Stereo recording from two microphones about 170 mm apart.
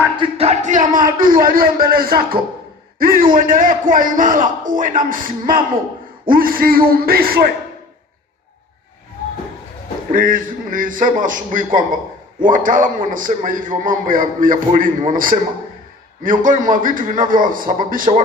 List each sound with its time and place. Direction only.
0.2 s a man's voice: 35° right (ahead or behind); by 7.5 s 60° right (ahead or behind)
10.1 s a man's voice: 55° right (ahead or behind)